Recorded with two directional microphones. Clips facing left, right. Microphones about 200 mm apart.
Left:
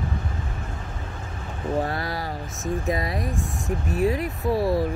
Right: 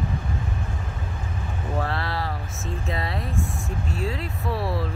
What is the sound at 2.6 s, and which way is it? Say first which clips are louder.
Speech: left 6 dB; 15° left (ahead or behind).